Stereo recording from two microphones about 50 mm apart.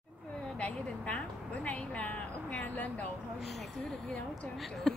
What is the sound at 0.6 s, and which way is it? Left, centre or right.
Speech, left.